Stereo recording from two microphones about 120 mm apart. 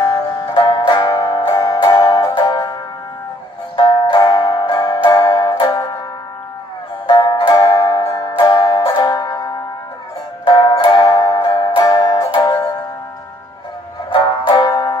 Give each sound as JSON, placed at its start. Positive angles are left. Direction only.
{"t": 0.6, "sound": "music", "side_deg": 40}
{"t": 3.7, "sound": "music", "side_deg": 45}
{"t": 7.1, "sound": "music", "side_deg": 40}
{"t": 14.5, "sound": "music", "side_deg": 35}